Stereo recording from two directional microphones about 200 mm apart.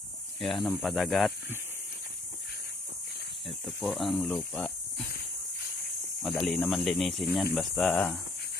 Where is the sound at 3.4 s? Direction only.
Centre (ahead or behind).